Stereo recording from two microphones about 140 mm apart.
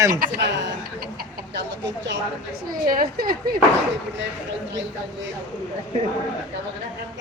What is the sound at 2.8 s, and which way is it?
Speech, 90° right.